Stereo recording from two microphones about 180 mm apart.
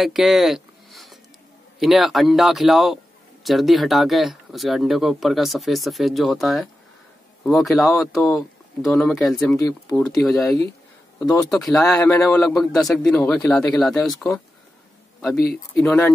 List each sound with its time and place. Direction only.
0.0 s a sound: centre (ahead or behind)
1.8 s speech: centre (ahead or behind)
11.1 s speech: 20° left (ahead or behind)
11.5 s speech: centre (ahead or behind)